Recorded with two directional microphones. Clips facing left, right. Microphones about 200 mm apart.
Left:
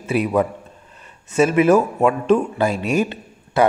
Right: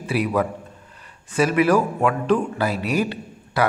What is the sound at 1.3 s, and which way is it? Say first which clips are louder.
Speech: left 3 dB; 25° left (ahead or behind).